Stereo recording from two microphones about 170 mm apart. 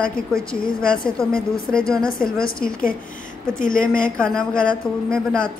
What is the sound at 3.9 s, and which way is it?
A woman's voice, 5° left (ahead or behind).